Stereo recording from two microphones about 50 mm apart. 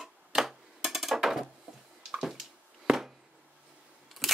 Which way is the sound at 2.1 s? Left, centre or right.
Centre.